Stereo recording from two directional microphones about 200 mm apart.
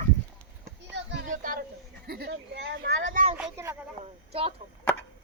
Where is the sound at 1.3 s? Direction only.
40° right (ahead or behind); by 3.1 s 65° right (ahead or behind).